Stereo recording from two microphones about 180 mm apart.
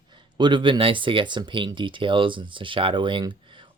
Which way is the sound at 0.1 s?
25° right (ahead or behind).